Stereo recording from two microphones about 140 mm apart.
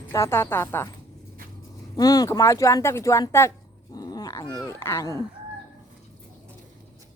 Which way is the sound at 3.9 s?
25° left (ahead or behind).